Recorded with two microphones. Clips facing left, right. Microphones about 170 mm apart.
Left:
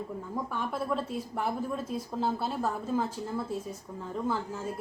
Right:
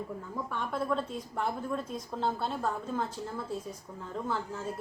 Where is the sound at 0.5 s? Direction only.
5° left (ahead or behind).